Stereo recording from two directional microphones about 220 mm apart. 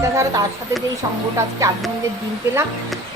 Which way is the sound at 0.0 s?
15° right (ahead or behind).